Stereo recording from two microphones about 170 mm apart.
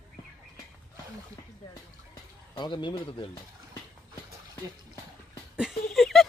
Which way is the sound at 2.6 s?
30° left (ahead or behind).